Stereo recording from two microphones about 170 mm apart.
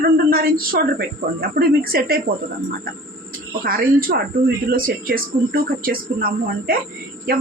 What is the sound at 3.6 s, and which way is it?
A woman's voice, 60° right (ahead or behind).